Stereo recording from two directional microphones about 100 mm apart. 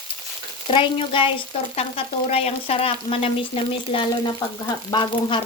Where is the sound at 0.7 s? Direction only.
60° left (ahead or behind).